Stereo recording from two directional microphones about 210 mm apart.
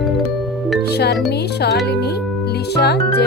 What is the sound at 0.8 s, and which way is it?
Music, 50° left (ahead or behind).